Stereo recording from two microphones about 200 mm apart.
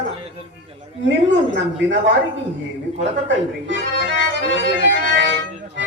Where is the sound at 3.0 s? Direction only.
60° right (ahead or behind).